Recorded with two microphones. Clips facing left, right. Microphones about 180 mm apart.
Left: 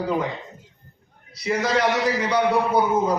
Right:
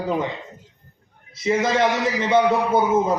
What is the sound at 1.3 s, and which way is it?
A man's voice, 20° right (ahead or behind).